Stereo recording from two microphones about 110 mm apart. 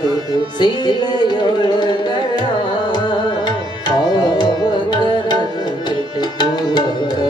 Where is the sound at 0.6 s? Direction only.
40° left (ahead or behind).